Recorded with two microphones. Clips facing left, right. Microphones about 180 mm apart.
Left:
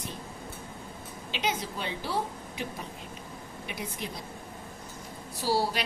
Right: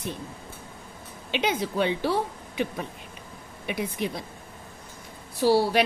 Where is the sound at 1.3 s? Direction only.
60° right (ahead or behind).